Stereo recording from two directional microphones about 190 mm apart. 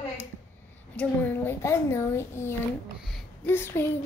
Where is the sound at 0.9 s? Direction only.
10° left (ahead or behind).